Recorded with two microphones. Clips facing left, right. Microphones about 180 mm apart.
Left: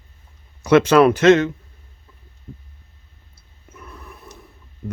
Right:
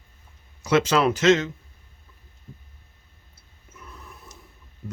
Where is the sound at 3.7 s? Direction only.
60° left (ahead or behind).